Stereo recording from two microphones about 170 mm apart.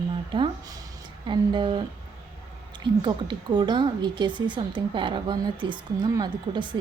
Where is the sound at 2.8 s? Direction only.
25° right (ahead or behind).